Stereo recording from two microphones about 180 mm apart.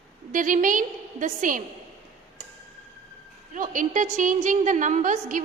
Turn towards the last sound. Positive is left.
turn(degrees=-45)  # may be behind; listen again after turning